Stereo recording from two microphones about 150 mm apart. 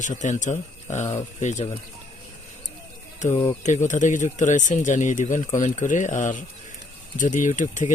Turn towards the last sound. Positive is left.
turn(degrees=55)  # may be behind; listen again after turning